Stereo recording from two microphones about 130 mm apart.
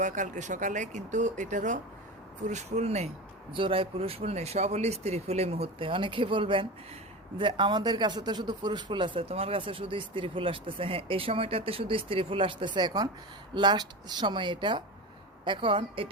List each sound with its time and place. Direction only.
0.0 s speech: 70° right (ahead or behind)
2.5 s speech: 60° right (ahead or behind)
3.5 s speech: 40° right (ahead or behind)